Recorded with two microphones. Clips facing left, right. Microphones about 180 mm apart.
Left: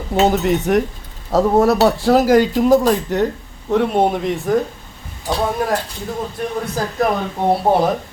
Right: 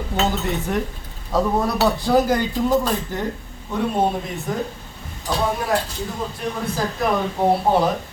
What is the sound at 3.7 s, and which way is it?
Speech, 75° left (ahead or behind).